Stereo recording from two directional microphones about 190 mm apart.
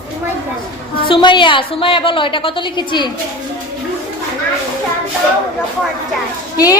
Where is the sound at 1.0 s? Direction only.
25° left (ahead or behind).